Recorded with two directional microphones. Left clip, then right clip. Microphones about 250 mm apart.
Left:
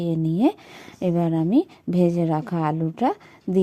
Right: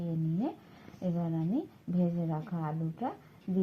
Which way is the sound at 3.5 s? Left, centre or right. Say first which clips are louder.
Left 13 dB; left.